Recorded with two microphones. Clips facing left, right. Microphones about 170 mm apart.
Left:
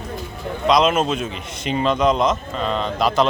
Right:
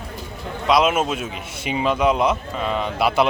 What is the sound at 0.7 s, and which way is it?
A man's voice, 5° right (ahead or behind).